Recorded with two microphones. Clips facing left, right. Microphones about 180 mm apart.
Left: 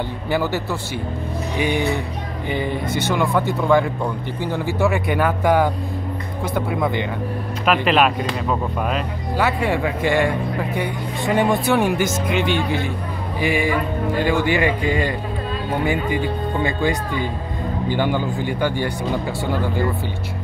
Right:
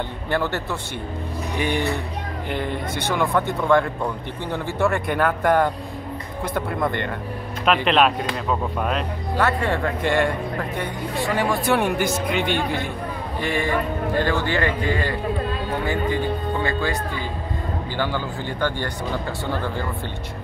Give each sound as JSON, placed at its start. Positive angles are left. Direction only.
{"t": 0.3, "sound": "speech", "side_deg": 5}
{"t": 11.2, "sound": "speech", "side_deg": 20}
{"t": 11.6, "sound": "speech", "side_deg": 5}